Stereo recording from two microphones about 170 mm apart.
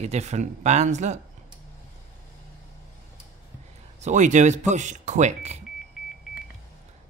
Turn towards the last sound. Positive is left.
turn(degrees=-40)  # may be behind; listen again after turning